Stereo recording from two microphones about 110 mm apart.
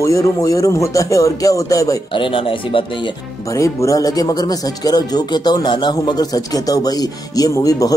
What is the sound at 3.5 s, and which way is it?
Speech, 30° left (ahead or behind).